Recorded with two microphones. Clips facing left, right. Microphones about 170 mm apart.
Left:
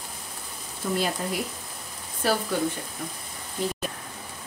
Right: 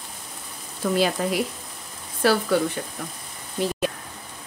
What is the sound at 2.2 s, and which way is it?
Speech, 75° right (ahead or behind).